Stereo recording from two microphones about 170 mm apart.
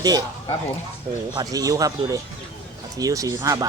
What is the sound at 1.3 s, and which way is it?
Speech, 20° right (ahead or behind).